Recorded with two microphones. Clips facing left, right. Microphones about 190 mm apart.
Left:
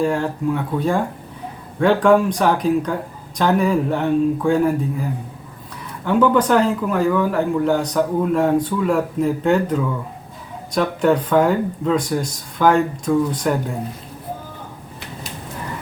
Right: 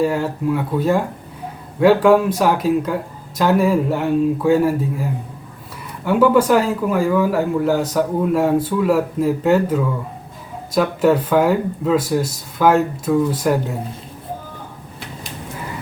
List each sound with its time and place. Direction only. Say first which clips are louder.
0.0 s speech: right 1 dB; 5° right (ahead or behind)
6.1 s speech: right 2 dB; 10° right (ahead or behind)